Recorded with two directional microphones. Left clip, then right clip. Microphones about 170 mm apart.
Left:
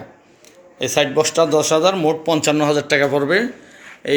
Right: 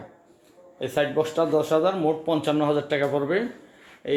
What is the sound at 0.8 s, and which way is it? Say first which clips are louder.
Speech: left 7 dB; 15° left (ahead or behind).